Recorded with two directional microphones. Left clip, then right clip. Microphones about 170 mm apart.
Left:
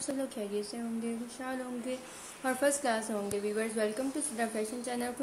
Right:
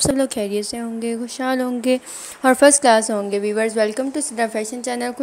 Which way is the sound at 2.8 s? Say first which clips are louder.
Right 17 dB; 45° right (ahead or behind).